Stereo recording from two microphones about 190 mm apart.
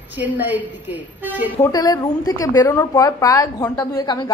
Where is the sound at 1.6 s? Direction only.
20° left (ahead or behind).